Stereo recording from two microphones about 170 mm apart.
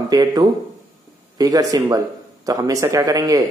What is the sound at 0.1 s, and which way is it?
Speech, 25° right (ahead or behind).